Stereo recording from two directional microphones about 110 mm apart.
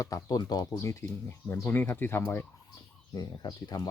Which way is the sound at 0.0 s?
35° left (ahead or behind).